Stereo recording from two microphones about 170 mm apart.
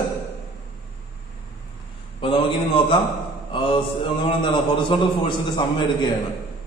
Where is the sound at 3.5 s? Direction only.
30° left (ahead or behind).